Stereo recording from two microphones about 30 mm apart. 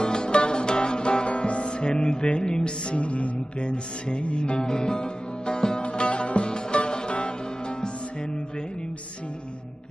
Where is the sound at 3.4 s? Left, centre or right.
Left.